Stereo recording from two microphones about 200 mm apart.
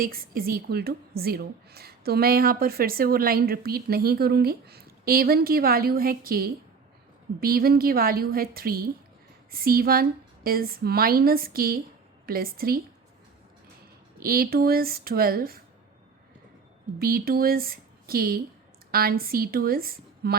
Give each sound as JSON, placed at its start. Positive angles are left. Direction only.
{"t": 0.0, "sound": "a woman's voice", "side_deg": -45}
{"t": 14.2, "sound": "a woman's voice", "side_deg": -50}
{"t": 17.0, "sound": "a woman's voice", "side_deg": -50}